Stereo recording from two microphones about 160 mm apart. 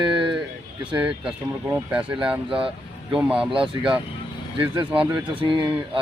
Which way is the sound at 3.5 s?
30° right (ahead or behind).